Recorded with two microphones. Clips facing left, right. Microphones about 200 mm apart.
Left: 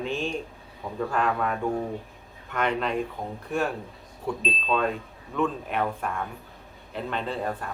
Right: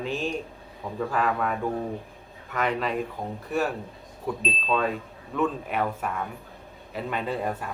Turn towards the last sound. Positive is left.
turn(degrees=-5)  # may be behind; listen again after turning